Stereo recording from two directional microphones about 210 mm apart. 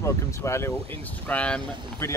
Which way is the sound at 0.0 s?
15° left (ahead or behind).